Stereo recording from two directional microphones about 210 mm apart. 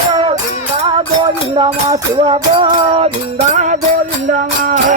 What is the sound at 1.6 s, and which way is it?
Music, 20° right (ahead or behind).